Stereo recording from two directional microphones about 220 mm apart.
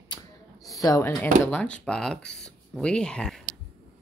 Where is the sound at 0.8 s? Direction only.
15° left (ahead or behind).